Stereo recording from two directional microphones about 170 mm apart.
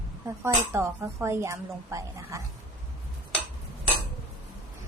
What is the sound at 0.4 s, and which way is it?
Speech, 15° right (ahead or behind).